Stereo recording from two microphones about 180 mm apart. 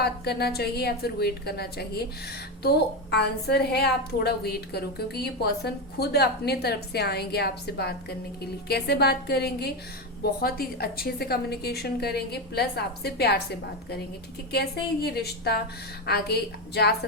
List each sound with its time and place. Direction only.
0.0 s a woman's voice: 60° left (ahead or behind)
14.5 s a woman's voice: 60° left (ahead or behind)